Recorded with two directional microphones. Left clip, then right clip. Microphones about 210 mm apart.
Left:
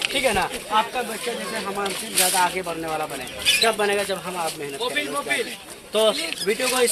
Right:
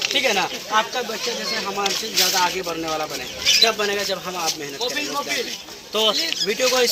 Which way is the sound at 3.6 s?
20° left (ahead or behind).